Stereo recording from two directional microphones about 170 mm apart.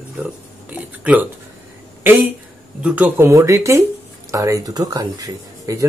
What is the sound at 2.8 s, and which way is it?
Speech, 10° right (ahead or behind).